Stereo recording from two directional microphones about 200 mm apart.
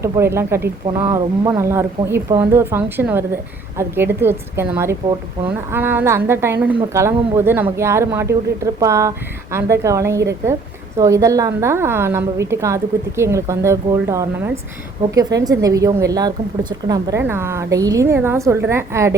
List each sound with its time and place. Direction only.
0.0 s speech: 15° right (ahead or behind)